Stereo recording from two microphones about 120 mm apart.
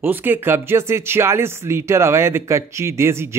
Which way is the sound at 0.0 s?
15° right (ahead or behind).